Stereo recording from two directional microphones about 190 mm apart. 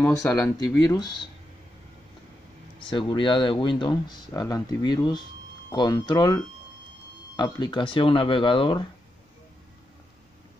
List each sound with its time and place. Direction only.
0.0 s speech: 5° left (ahead or behind)
0.5 s speech: 20° left (ahead or behind)
2.8 s speech: 25° left (ahead or behind)